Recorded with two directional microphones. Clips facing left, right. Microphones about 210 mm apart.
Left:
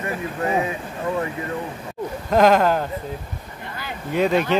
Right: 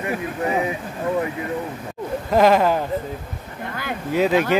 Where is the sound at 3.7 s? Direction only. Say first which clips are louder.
Right 5 dB; 55° right (ahead or behind).